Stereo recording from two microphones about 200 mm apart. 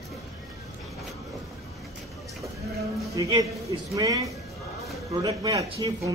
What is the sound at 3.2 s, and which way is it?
A man's voice, 20° right (ahead or behind).